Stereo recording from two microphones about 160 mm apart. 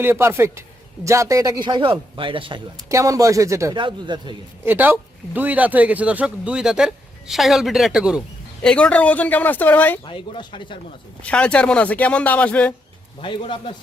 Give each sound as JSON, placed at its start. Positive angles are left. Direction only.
{"t": 0.0, "sound": "a man's voice", "side_deg": -15}
{"t": 2.9, "sound": "a man's voice", "side_deg": -20}
{"t": 3.8, "sound": "a man's voice", "side_deg": -30}
{"t": 4.6, "sound": "a man's voice", "side_deg": -10}
{"t": 8.6, "sound": "speech", "side_deg": 10}
{"t": 10.0, "sound": "speech", "side_deg": 30}
{"t": 11.2, "sound": "speech", "side_deg": 5}
{"t": 13.2, "sound": "speech", "side_deg": 30}